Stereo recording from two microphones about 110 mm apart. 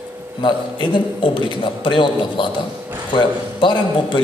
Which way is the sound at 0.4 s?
45° left (ahead or behind).